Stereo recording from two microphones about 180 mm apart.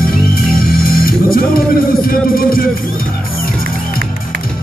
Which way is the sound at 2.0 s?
55° left (ahead or behind).